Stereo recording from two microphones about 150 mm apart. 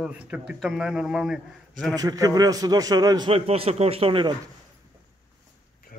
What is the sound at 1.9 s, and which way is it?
A man's voice, 25° right (ahead or behind).